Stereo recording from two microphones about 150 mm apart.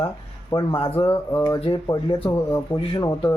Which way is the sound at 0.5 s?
30° left (ahead or behind).